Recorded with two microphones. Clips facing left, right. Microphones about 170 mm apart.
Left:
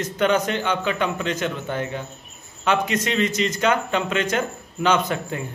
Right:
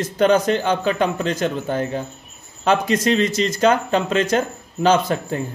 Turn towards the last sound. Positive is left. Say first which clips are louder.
# right 4 dB
turn(degrees=-35)  # may be behind; listen again after turning